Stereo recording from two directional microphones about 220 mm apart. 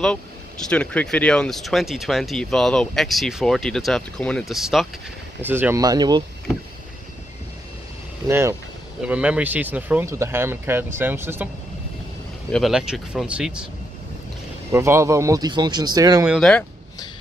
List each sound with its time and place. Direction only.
0.7 s speech: 5° left (ahead or behind); by 6.2 s 20° right (ahead or behind)
8.3 s speech: 10° right (ahead or behind)
12.4 s speech: centre (ahead or behind)
14.7 s speech: 10° right (ahead or behind)
16.3 s speech: 5° left (ahead or behind)